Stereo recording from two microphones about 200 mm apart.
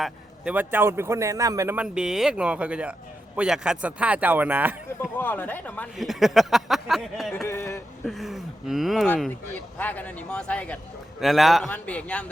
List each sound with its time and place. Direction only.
0.0 s speech: 5° right (ahead or behind)
5.1 s speech: 10° left (ahead or behind)
7.4 s speech: 15° left (ahead or behind)
8.0 s speech: centre (ahead or behind)